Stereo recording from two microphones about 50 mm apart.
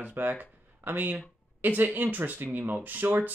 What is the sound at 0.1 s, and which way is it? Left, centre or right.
Speech, right.